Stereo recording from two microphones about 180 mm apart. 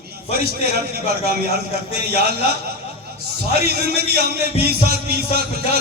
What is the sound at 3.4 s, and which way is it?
A man's voice, 60° right (ahead or behind).